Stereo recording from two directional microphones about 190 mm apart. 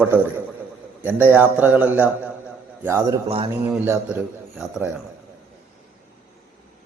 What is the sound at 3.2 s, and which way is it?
Speech, 30° right (ahead or behind).